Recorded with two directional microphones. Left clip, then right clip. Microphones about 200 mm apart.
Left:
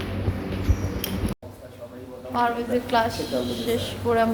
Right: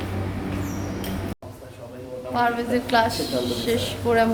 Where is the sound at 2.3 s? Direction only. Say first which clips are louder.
Right 1 dB; 5° right (ahead or behind).